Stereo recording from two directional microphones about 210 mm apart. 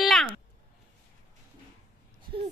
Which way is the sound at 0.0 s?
Centre (ahead or behind).